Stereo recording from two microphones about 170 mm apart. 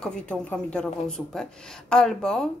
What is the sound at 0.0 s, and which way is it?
Speech, 5° left (ahead or behind).